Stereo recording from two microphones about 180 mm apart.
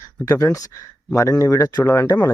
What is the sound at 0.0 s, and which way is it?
Speech, 15° left (ahead or behind).